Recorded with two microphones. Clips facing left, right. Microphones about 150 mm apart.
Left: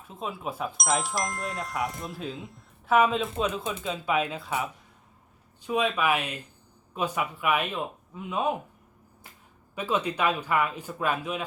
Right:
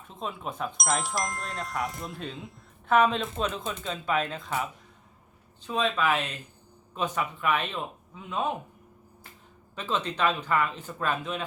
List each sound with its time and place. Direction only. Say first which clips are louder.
0.1 s speech: left 1 dB; 5° left (ahead or behind)
9.7 s speech: left 2 dB; 10° left (ahead or behind)